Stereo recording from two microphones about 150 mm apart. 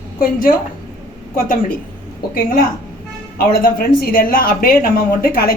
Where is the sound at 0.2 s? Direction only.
70° left (ahead or behind).